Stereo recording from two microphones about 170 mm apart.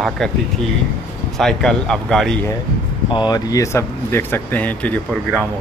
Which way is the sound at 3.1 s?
25° left (ahead or behind).